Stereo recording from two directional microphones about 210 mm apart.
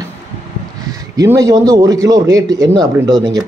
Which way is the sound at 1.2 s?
15° right (ahead or behind).